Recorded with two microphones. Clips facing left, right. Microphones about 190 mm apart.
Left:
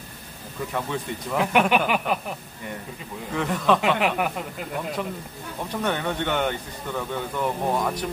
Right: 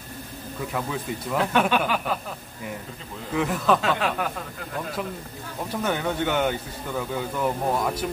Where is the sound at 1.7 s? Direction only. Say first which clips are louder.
Left 2 dB; 15° left (ahead or behind).